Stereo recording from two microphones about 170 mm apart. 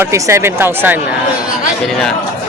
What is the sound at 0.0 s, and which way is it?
Speech, 15° right (ahead or behind).